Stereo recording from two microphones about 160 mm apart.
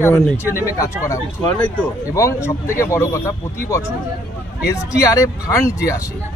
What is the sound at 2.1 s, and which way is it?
A man's voice, 20° left (ahead or behind).